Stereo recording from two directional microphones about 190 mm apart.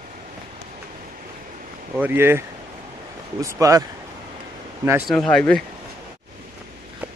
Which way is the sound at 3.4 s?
15° right (ahead or behind).